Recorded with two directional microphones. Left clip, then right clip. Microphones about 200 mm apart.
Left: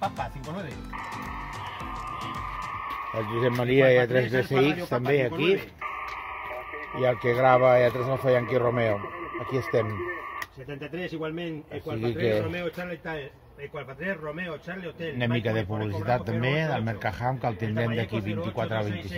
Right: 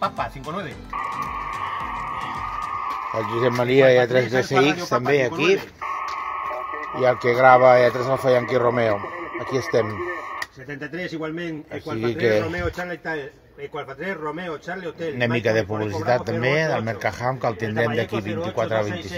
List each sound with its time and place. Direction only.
3.3 s speech: 5° right (ahead or behind)
7.0 s speech: centre (ahead or behind)
12.0 s a man's voice: 10° right (ahead or behind)
15.1 s speech: 10° right (ahead or behind)